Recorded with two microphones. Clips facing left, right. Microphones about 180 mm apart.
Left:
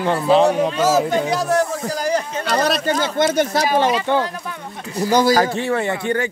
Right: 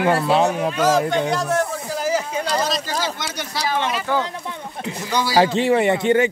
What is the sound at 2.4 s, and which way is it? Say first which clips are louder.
Speech: left 4 dB; 65° left (ahead or behind).